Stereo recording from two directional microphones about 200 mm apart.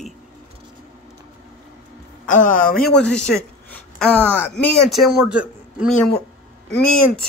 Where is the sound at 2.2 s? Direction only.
40° left (ahead or behind).